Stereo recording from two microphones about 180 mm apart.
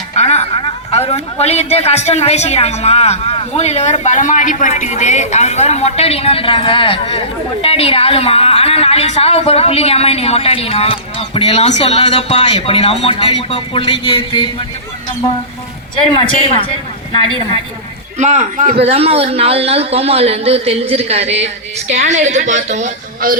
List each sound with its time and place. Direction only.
0.2 s a man's voice: 35° left (ahead or behind)
16.1 s a woman's voice: 30° left (ahead or behind)
18.2 s a man's voice: 40° right (ahead or behind)
18.7 s a man's voice: 35° right (ahead or behind)